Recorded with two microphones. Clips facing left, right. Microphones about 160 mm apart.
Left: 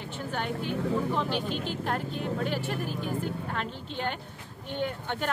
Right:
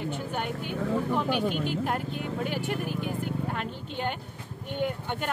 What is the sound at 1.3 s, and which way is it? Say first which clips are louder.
Speech: right 3 dB; 55° right (ahead or behind).